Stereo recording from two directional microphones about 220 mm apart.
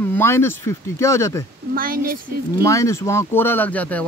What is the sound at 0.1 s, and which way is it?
Speech, 10° left (ahead or behind).